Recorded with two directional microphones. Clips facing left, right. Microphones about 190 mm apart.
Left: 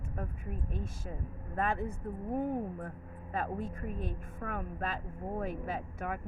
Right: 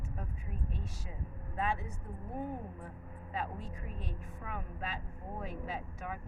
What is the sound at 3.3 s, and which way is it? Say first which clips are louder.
A woman's voice: left 5 dB; 50° left (ahead or behind).